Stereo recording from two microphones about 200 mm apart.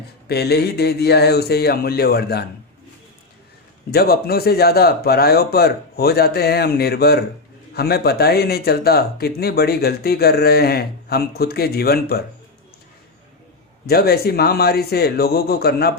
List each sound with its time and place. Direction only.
0.3 s speech: 55° left (ahead or behind)
3.9 s speech: 50° left (ahead or behind)
13.8 s speech: 50° left (ahead or behind)